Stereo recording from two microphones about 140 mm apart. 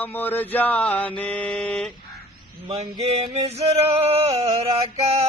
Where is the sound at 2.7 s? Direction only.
45° right (ahead or behind).